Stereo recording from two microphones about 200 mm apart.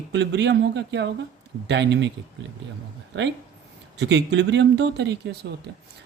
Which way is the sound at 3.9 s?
60° right (ahead or behind).